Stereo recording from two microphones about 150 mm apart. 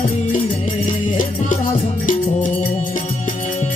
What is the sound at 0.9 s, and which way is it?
Music, 60° left (ahead or behind).